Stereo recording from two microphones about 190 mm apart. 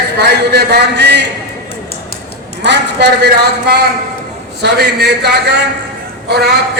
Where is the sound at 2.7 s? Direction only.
60° right (ahead or behind).